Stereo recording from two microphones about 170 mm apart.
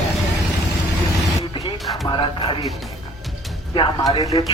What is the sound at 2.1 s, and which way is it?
Music, 30° left (ahead or behind).